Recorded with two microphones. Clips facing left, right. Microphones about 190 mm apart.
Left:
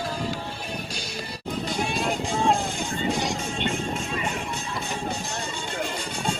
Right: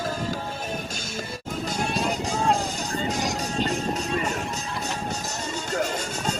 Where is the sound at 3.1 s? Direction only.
40° right (ahead or behind).